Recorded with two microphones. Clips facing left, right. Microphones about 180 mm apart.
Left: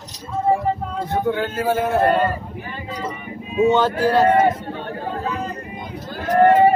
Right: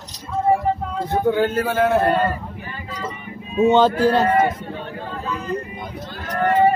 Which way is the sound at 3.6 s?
20° right (ahead or behind).